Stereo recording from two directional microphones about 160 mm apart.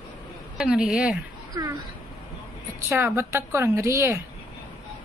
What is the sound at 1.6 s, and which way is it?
Speech, 20° right (ahead or behind).